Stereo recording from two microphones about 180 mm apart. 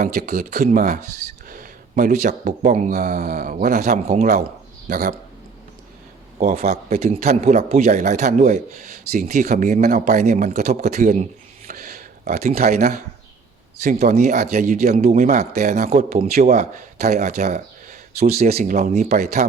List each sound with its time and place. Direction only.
0.0 s speech: 55° right (ahead or behind)
6.4 s speech: 35° right (ahead or behind)